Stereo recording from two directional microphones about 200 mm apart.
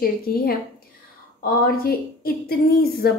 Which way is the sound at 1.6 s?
50° left (ahead or behind).